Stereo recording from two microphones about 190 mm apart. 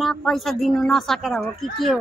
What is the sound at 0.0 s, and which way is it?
Speech, centre (ahead or behind).